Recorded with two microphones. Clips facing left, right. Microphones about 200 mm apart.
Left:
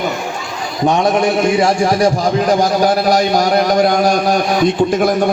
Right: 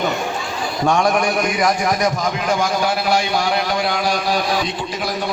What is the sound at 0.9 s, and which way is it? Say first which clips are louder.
A man's voice: left 4 dB; 20° left (ahead or behind).